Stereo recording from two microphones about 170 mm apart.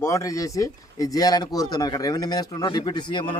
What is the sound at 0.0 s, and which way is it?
A man's voice, 20° left (ahead or behind).